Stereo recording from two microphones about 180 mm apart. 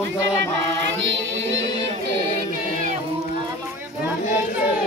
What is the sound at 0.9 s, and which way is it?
Music, 90° right.